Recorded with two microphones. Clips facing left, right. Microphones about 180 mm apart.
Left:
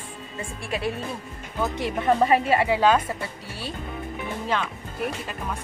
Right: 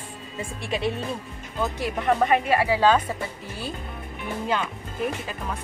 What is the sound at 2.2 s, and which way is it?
Speech, 30° left (ahead or behind).